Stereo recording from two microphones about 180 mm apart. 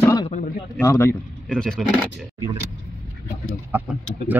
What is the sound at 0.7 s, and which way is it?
Speech, 10° left (ahead or behind).